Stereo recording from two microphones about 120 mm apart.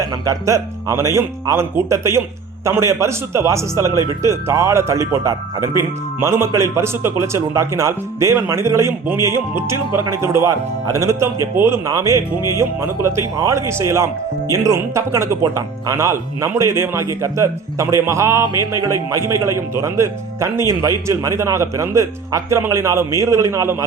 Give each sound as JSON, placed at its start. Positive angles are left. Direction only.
{"t": 0.3, "sound": "speech", "side_deg": -25}